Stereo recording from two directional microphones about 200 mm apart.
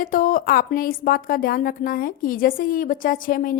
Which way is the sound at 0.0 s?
40° left (ahead or behind).